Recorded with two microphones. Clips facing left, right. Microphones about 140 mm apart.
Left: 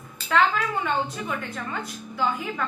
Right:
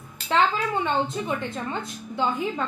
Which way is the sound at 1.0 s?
25° right (ahead or behind).